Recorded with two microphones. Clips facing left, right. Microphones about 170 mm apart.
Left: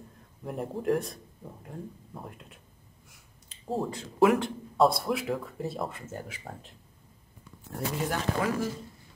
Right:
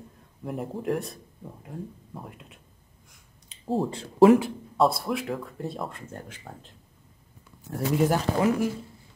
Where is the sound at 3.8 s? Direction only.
30° right (ahead or behind).